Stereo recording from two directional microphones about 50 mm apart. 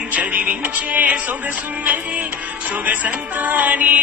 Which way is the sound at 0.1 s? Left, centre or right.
Right.